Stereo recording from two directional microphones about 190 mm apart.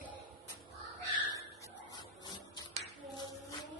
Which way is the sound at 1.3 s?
15° left (ahead or behind).